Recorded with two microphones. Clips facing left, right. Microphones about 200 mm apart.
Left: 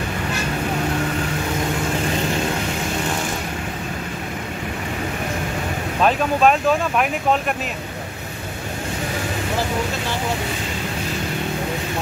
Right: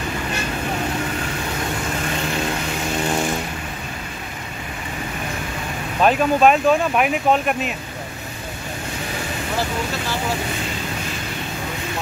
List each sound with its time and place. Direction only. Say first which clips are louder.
6.0 s speech: right 2 dB; 5° right (ahead or behind)